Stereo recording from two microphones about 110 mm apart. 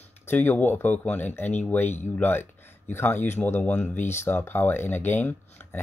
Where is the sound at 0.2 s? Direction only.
20° left (ahead or behind).